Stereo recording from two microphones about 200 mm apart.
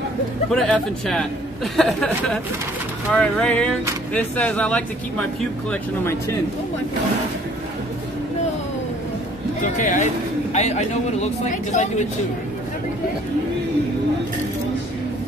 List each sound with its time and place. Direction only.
0.5 s a man's voice: centre (ahead or behind)
9.6 s a man's voice: 40° left (ahead or behind)